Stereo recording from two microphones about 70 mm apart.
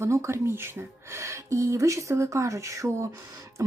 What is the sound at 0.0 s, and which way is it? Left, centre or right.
Speech, right.